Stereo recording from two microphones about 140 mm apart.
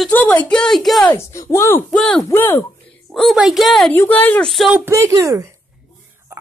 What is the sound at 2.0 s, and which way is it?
Speech, 5° left (ahead or behind).